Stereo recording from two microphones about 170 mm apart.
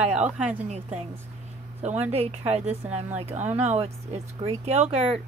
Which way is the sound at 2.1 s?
35° right (ahead or behind).